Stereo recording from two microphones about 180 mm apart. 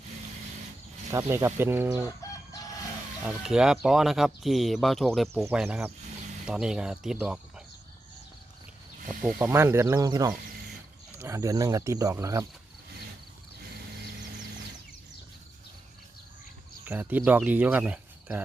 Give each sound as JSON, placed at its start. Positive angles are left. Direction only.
{"t": 1.1, "sound": "speech", "side_deg": -15}
{"t": 3.2, "sound": "speech", "side_deg": -5}
{"t": 5.4, "sound": "speech", "side_deg": -10}
{"t": 9.0, "sound": "speech", "side_deg": -10}
{"t": 16.8, "sound": "speech", "side_deg": -10}